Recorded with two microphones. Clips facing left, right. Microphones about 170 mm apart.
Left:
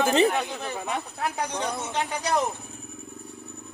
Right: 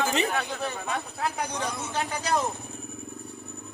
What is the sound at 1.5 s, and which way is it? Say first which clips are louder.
Speech: left 2 dB; 20° left (ahead or behind).